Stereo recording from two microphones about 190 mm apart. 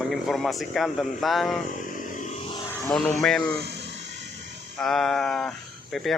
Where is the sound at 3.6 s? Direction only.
65° right (ahead or behind).